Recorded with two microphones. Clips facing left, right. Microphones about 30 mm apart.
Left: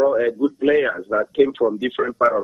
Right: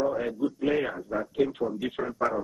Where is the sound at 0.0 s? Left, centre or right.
Left.